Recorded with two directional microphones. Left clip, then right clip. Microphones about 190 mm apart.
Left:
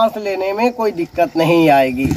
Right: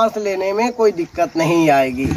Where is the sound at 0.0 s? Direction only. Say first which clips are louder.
Left 1 dB; 5° right (ahead or behind).